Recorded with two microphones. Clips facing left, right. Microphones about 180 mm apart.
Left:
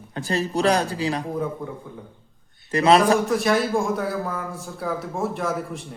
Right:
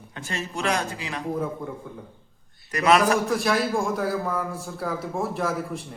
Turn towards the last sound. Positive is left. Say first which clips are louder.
# even
turn(degrees=0)  # may be behind; listen again after turning